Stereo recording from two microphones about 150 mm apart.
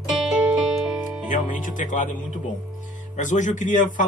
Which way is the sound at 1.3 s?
60° left (ahead or behind).